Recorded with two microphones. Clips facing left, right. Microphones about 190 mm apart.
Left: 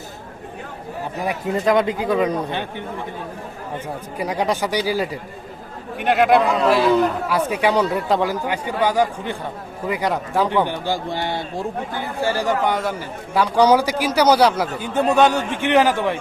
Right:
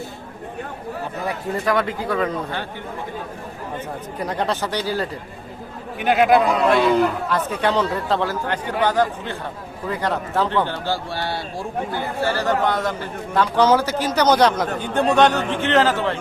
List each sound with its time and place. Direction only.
1.3 s a man's voice: 20° left (ahead or behind)
4.2 s a man's voice: 10° left (ahead or behind)
6.0 s a man's voice: centre (ahead or behind)